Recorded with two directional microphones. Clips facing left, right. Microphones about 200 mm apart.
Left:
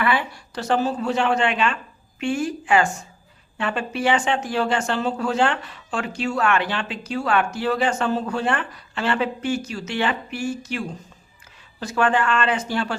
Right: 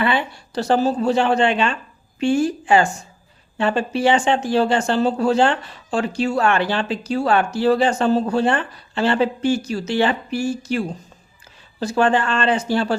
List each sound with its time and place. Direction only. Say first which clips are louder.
0.0 s speech: right 2 dB; 25° right (ahead or behind)